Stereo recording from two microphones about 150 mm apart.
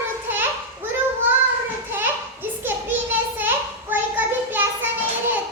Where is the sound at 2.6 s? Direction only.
15° right (ahead or behind).